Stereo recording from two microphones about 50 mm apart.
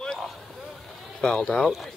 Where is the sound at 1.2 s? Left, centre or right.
Centre.